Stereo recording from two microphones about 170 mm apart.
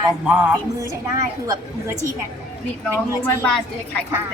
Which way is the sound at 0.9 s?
20° right (ahead or behind).